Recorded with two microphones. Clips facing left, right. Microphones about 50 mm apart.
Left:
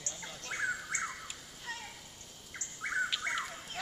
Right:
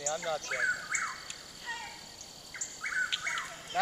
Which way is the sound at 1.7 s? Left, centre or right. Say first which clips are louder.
Right 3 dB; centre.